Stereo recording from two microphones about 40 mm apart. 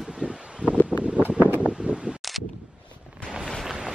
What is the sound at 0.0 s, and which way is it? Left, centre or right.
Rustling leaves, centre.